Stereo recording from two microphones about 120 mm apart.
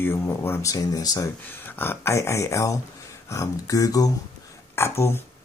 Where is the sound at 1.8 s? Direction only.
20° left (ahead or behind).